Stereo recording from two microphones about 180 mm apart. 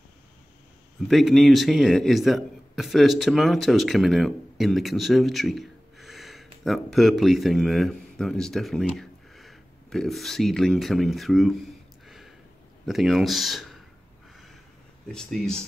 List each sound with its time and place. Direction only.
1.0 s a man's voice: centre (ahead or behind)
12.1 s a sound: centre (ahead or behind)
12.8 s speech: centre (ahead or behind)
15.0 s speech: 5° left (ahead or behind)